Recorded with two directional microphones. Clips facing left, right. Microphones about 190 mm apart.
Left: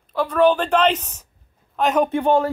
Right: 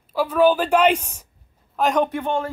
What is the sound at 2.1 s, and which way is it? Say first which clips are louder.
Speech: left 6 dB; 35° left (ahead or behind).